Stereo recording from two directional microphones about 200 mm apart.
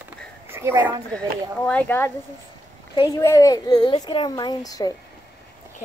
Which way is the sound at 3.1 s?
15° left (ahead or behind).